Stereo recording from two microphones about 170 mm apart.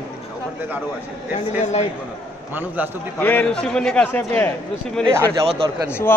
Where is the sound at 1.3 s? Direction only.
40° left (ahead or behind).